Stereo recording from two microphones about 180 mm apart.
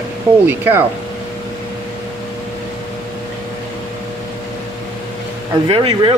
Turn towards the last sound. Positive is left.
turn(degrees=-30)  # may be behind; listen again after turning